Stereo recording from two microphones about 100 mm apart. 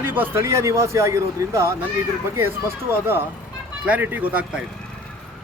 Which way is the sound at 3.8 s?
15° right (ahead or behind).